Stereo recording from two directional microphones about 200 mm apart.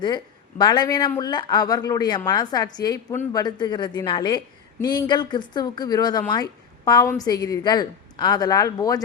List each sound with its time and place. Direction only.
0.6 s a woman's voice: 20° left (ahead or behind)